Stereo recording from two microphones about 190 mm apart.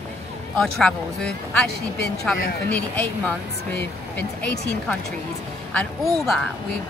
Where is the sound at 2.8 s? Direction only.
5° left (ahead or behind).